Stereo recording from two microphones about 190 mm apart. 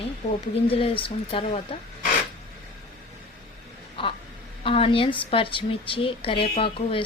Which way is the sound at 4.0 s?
25° left (ahead or behind).